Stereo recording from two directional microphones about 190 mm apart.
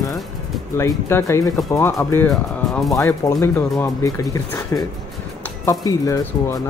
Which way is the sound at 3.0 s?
15° left (ahead or behind).